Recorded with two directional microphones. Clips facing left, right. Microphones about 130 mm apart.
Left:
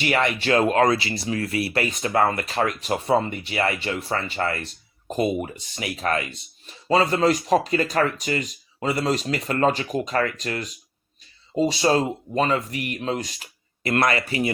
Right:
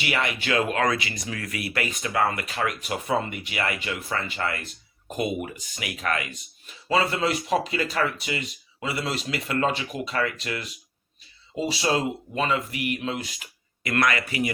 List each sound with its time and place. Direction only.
0.0 s speech: 40° left (ahead or behind)